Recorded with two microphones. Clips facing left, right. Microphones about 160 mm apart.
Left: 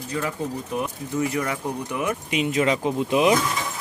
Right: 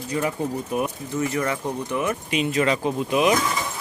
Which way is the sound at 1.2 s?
15° left (ahead or behind).